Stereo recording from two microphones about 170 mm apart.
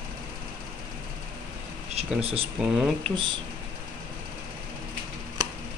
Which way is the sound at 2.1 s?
35° right (ahead or behind).